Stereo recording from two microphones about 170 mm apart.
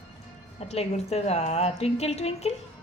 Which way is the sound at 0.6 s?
40° left (ahead or behind).